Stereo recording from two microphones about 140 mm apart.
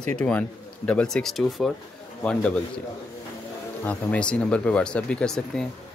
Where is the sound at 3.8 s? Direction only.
10° left (ahead or behind).